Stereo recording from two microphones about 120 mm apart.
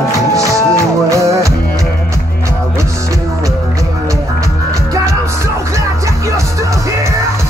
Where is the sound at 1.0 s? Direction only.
25° right (ahead or behind).